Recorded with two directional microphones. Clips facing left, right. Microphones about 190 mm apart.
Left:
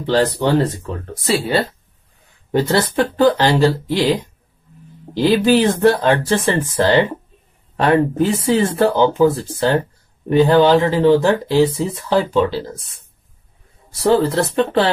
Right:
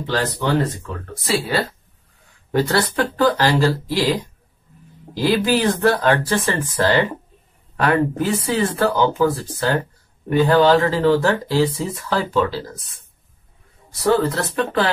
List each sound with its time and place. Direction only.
0.0 s speech: 30° left (ahead or behind)
13.9 s speech: 30° left (ahead or behind)